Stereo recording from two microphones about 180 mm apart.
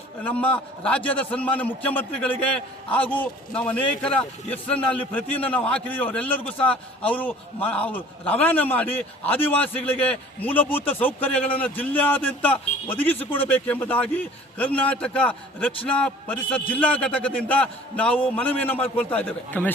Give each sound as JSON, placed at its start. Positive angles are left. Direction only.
{"t": 0.3, "sound": "a man's voice", "side_deg": 10}